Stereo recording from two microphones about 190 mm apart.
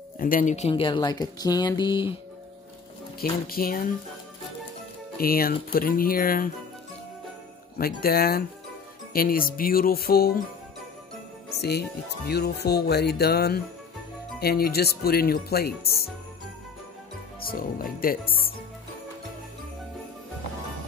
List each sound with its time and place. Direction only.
0.2 s speech: 45° left (ahead or behind); by 2.1 s 25° left (ahead or behind)
3.2 s speech: 50° left (ahead or behind)
5.1 s speech: 50° left (ahead or behind)
7.7 s speech: 50° left (ahead or behind)
11.5 s speech: 60° left (ahead or behind)
17.4 s music: 50° left (ahead or behind)
18.0 s speech: 50° left (ahead or behind)